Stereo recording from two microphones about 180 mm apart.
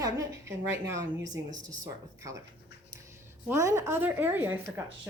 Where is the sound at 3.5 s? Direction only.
15° right (ahead or behind).